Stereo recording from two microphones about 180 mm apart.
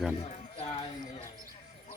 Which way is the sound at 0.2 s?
40° left (ahead or behind).